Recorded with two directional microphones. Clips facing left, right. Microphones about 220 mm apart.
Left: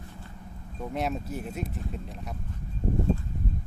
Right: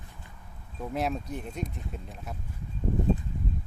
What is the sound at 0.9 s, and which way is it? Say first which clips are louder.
Speech: even; centre (ahead or behind).